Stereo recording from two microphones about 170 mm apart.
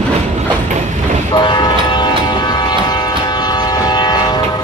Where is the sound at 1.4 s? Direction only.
25° left (ahead or behind).